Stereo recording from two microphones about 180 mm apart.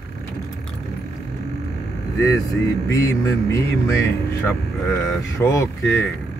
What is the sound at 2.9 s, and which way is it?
Speech, 20° left (ahead or behind).